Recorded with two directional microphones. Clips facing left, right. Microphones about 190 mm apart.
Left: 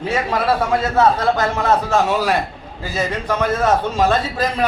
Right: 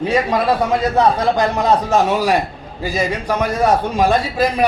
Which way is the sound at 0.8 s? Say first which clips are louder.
Right 1 dB; 15° right (ahead or behind).